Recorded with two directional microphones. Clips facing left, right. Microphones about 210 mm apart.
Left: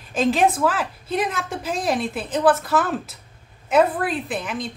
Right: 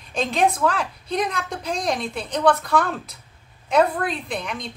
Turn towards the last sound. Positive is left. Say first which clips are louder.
# left 2 dB
turn(degrees=5)  # may be behind; listen again after turning